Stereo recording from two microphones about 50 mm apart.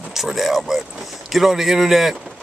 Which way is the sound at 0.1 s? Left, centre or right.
Centre.